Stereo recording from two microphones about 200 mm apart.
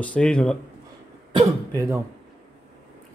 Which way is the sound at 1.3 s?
15° right (ahead or behind).